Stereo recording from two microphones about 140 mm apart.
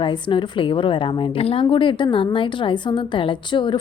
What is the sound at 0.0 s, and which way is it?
A woman's voice, 35° left (ahead or behind).